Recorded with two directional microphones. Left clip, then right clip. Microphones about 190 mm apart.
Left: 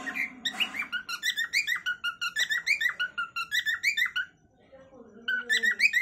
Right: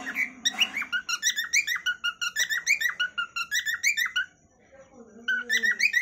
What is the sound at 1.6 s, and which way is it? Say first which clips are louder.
Bird: right 2 dB; 10° left (ahead or behind).